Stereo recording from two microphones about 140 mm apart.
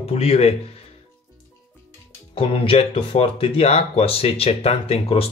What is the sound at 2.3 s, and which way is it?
Speech, 40° left (ahead or behind).